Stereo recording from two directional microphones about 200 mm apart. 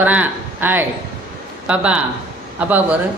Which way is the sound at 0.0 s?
10° right (ahead or behind).